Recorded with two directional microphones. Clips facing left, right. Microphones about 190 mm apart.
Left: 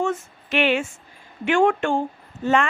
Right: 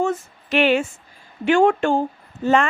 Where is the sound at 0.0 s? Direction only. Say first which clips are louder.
Right 2 dB; 40° right (ahead or behind).